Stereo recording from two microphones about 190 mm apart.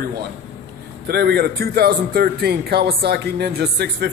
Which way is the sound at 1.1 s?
60° right (ahead or behind).